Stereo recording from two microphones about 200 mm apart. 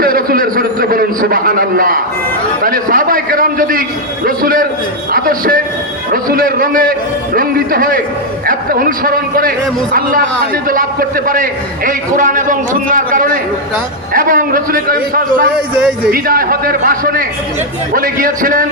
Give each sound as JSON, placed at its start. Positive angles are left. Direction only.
{"t": 0.0, "sound": "a sound", "side_deg": -45}
{"t": 2.6, "sound": "a man's voice", "side_deg": -45}
{"t": 11.9, "sound": "a man's voice", "side_deg": -40}